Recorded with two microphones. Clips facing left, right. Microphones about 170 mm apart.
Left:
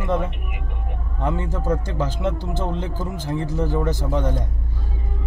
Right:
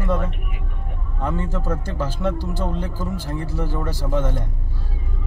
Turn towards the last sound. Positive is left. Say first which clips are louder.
# left 1 dB
turn(degrees=15)  # may be behind; listen again after turning